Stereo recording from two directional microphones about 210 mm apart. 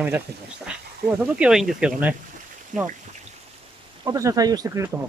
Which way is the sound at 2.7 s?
35° right (ahead or behind).